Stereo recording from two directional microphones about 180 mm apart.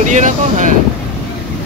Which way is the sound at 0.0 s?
45° right (ahead or behind).